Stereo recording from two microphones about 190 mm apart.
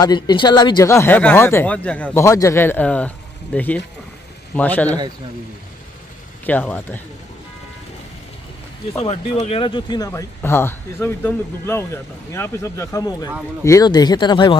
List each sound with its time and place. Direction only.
0.0 s speech: 20° left (ahead or behind)
6.4 s speech: 10° left (ahead or behind)
8.9 s speech: 35° left (ahead or behind)